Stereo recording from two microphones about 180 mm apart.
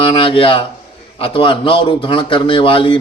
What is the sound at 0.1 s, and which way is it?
A man's voice, 30° left (ahead or behind).